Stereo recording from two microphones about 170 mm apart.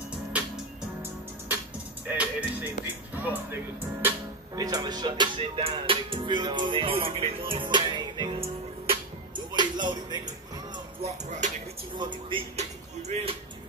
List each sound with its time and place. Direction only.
2.0 s music: 10° right (ahead or behind)
3.2 s speech: 10° right (ahead or behind)
4.6 s music: 25° right (ahead or behind)
9.5 s music: 25° right (ahead or behind)
11.0 s music: 40° right (ahead or behind)
12.0 s music: 30° right (ahead or behind)
13.1 s speech: 35° right (ahead or behind)